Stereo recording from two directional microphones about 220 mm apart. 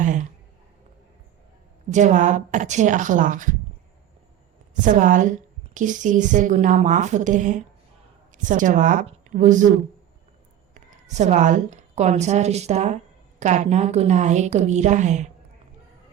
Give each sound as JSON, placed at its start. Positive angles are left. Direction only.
{"t": 0.0, "sound": "a sound", "side_deg": -35}
{"t": 1.9, "sound": "a woman's voice", "side_deg": -35}
{"t": 4.7, "sound": "a woman's voice", "side_deg": -35}
{"t": 10.9, "sound": "a woman's voice", "side_deg": -35}